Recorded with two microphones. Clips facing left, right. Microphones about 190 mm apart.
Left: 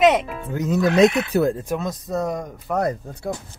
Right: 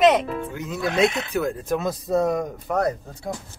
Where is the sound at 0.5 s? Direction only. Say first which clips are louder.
Left 8 dB; 40° left (ahead or behind).